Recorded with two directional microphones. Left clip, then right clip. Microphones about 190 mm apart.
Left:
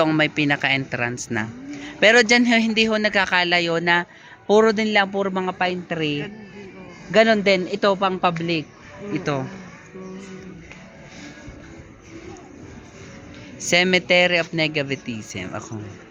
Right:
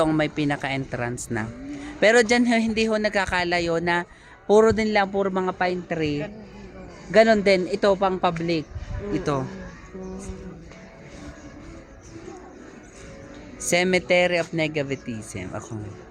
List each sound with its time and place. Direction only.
0.0 s speech: 10° right (ahead or behind)
13.6 s speech: 5° right (ahead or behind)